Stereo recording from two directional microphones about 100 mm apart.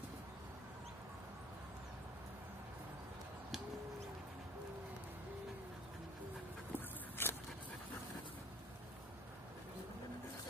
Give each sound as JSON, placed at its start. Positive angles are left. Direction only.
{"t": 6.7, "sound": "dog", "side_deg": 20}